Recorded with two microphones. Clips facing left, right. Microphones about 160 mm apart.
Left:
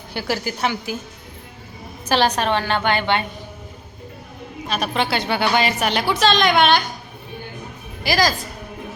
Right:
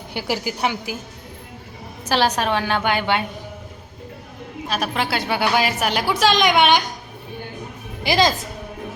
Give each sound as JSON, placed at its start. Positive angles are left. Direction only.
{"t": 0.1, "sound": "a woman's voice", "side_deg": -15}
{"t": 2.0, "sound": "a woman's voice", "side_deg": -5}
{"t": 4.7, "sound": "a woman's voice", "side_deg": -5}
{"t": 8.0, "sound": "a woman's voice", "side_deg": -20}